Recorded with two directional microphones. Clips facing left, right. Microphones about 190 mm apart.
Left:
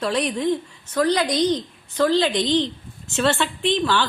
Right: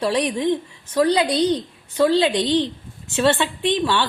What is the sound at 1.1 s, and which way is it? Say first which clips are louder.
Speech: even; 30° right (ahead or behind).